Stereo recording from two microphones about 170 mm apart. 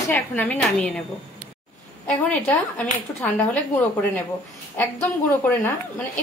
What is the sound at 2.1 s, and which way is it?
Speech, 10° left (ahead or behind).